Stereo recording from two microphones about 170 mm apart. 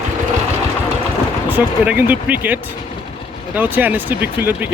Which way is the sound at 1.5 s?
10° right (ahead or behind).